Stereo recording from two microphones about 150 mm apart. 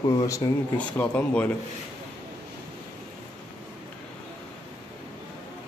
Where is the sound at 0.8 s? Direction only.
10° left (ahead or behind).